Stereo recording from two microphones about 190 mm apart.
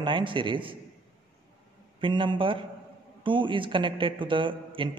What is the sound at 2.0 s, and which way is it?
A man's voice, 25° right (ahead or behind).